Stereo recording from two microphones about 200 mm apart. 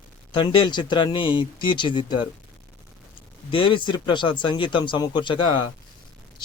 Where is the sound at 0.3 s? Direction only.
25° left (ahead or behind).